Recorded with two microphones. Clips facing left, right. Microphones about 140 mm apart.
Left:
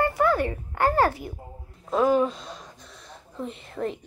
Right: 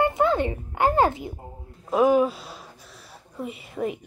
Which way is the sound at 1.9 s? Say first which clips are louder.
Right 2 dB; 10° right (ahead or behind).